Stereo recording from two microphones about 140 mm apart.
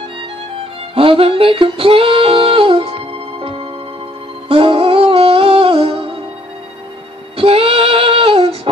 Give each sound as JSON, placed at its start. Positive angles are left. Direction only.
{"t": 0.9, "sound": "music", "side_deg": -40}
{"t": 7.3, "sound": "female singing", "side_deg": -40}